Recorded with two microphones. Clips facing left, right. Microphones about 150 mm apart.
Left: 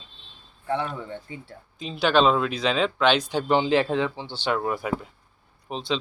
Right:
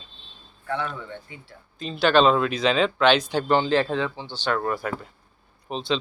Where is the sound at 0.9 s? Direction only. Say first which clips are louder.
Left 3 dB; 35° left (ahead or behind).